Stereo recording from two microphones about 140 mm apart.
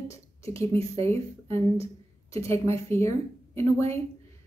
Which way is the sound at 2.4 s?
20° left (ahead or behind).